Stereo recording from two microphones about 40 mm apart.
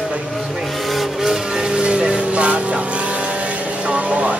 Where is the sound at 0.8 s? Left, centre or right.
Centre.